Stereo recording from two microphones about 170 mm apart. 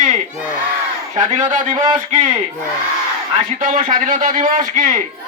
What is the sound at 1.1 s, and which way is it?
Speech, 45° right (ahead or behind).